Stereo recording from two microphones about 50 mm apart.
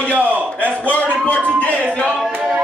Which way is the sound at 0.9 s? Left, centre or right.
Left.